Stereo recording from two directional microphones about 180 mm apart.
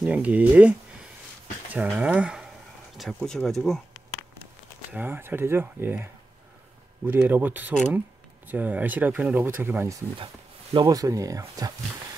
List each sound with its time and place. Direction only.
0.0 s speech: 10° right (ahead or behind)
4.9 s speech: 10° right (ahead or behind)
7.1 s speech: 10° right (ahead or behind)
10.1 s speech: 30° right (ahead or behind)